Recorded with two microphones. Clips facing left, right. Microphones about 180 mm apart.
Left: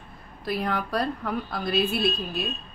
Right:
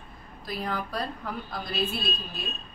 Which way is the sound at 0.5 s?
65° left (ahead or behind).